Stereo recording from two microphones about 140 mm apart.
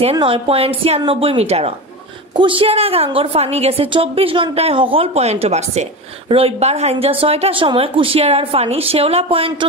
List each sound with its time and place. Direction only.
0.0 s a woman's voice: 40° right (ahead or behind)